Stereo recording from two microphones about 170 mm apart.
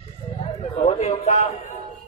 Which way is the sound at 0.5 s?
40° left (ahead or behind).